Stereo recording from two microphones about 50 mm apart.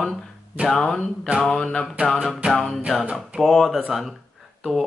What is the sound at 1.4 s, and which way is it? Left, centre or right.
Speech, centre.